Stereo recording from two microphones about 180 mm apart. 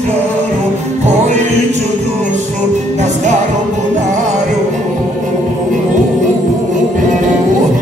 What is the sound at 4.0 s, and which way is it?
Music, 40° right (ahead or behind).